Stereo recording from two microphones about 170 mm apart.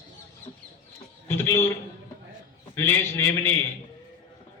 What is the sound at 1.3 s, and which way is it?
Speech, 15° left (ahead or behind).